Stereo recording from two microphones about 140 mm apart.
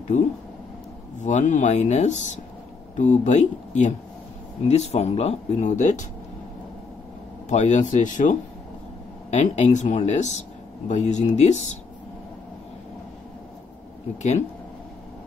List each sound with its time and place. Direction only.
0.1 s speech: 60° left (ahead or behind)
7.4 s speech: 55° left (ahead or behind)
14.1 s speech: 50° left (ahead or behind)